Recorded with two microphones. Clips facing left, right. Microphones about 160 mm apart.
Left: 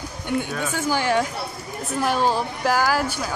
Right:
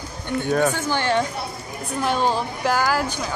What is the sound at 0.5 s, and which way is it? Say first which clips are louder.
Speech: right 9 dB; 50° right (ahead or behind).